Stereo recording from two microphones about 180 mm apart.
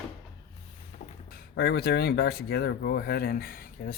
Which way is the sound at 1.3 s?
65° left (ahead or behind).